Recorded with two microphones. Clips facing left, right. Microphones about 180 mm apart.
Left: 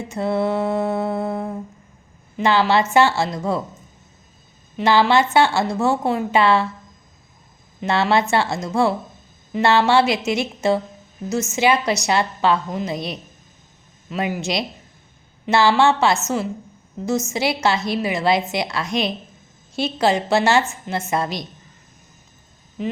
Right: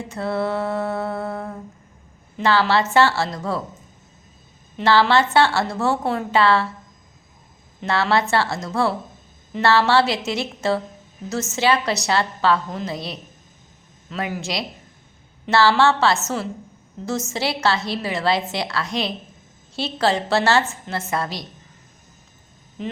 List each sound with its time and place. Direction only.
0.1 s a woman's voice: 15° left (ahead or behind)
4.8 s a woman's voice: 15° left (ahead or behind)
7.9 s a woman's voice: 20° left (ahead or behind)